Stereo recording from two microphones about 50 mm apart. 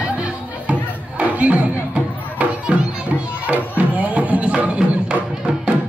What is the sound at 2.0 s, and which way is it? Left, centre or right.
Music, centre.